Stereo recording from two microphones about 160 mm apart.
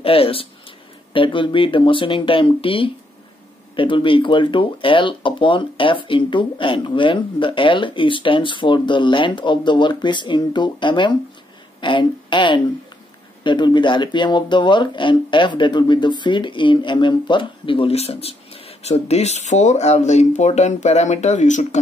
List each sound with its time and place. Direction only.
0.0 s a woman's voice: 35° left (ahead or behind)